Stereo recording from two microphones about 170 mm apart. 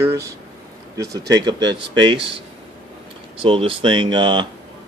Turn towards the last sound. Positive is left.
turn(degrees=-25)  # may be behind; listen again after turning